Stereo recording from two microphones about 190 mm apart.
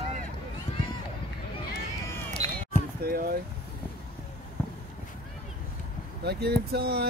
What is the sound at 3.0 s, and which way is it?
Speech, 50° right (ahead or behind).